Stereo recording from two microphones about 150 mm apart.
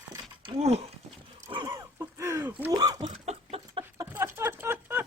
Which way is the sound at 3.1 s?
45° right (ahead or behind).